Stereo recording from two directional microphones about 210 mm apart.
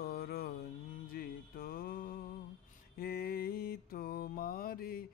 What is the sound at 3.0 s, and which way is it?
Mantra, 45° left (ahead or behind).